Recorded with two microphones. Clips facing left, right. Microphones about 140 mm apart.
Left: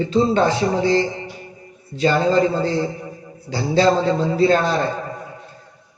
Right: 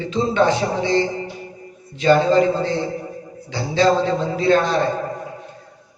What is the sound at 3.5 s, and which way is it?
A man's voice, 35° left (ahead or behind).